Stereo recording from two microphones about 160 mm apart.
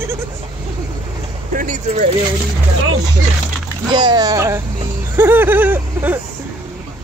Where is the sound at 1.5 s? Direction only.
50° right (ahead or behind).